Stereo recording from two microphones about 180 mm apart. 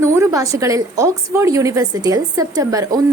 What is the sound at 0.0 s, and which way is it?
A woman's voice, 15° right (ahead or behind).